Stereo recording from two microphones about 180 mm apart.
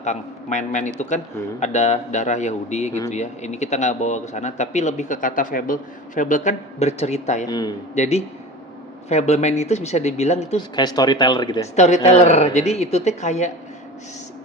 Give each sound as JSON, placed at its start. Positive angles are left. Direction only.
{"t": 0.0, "sound": "a man's voice", "side_deg": 40}
{"t": 7.4, "sound": "speech", "side_deg": 20}
{"t": 7.9, "sound": "a man's voice", "side_deg": 40}
{"t": 10.8, "sound": "speech", "side_deg": 20}
{"t": 11.8, "sound": "a man's voice", "side_deg": 40}